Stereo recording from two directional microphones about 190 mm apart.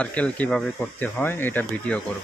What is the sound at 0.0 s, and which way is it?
Speech, 5° left (ahead or behind).